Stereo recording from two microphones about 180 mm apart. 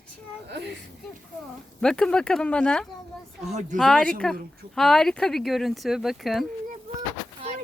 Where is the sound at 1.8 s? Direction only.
5° left (ahead or behind).